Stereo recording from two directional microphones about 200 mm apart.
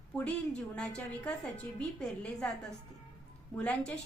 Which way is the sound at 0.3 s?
5° left (ahead or behind).